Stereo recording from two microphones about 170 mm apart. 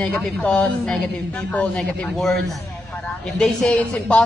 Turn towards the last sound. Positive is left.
turn(degrees=5)  # may be behind; listen again after turning